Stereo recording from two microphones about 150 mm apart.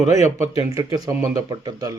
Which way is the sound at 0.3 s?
20° right (ahead or behind).